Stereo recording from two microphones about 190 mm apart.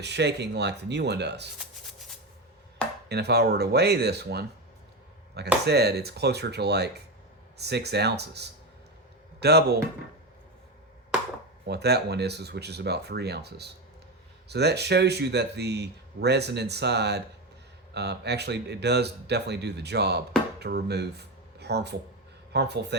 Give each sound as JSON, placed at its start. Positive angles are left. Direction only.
{"t": 0.0, "sound": "speech", "side_deg": -65}
{"t": 3.1, "sound": "speech", "side_deg": -60}
{"t": 5.6, "sound": "speech", "side_deg": -60}
{"t": 11.6, "sound": "speech", "side_deg": -60}